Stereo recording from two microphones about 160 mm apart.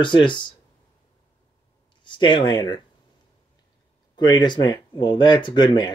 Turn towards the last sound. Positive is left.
turn(degrees=30)  # may be behind; listen again after turning